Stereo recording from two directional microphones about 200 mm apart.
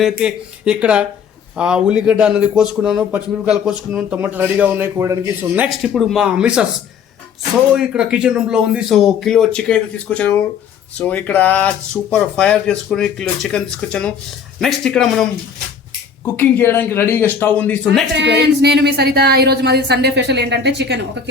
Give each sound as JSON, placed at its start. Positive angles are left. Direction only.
{"t": 0.0, "sound": "a man's voice", "side_deg": -5}
{"t": 7.7, "sound": "a man's voice", "side_deg": -5}
{"t": 18.2, "sound": "speech", "side_deg": -60}